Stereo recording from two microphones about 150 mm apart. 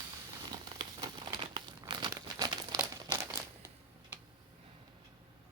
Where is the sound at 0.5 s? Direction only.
30° right (ahead or behind).